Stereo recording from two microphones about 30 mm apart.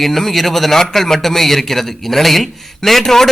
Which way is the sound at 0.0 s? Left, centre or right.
Centre.